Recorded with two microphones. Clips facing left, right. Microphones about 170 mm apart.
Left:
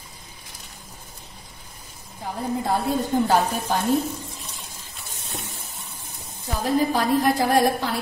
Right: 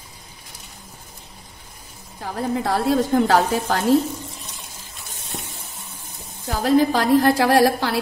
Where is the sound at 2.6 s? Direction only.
90° right.